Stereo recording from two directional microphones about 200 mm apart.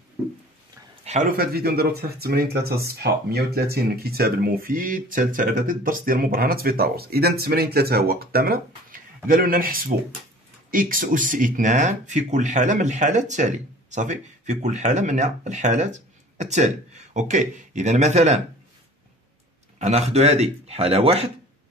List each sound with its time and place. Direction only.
1.0 s speech: 40° right (ahead or behind)
19.8 s speech: 35° right (ahead or behind)